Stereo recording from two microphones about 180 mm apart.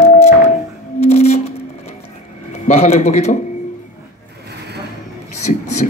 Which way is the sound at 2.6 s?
35° left (ahead or behind).